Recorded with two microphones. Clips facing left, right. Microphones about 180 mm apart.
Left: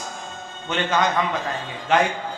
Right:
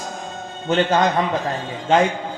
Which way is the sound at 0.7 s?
35° right (ahead or behind).